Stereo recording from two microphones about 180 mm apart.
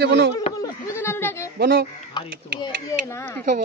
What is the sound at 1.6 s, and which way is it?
Speech, 65° right (ahead or behind).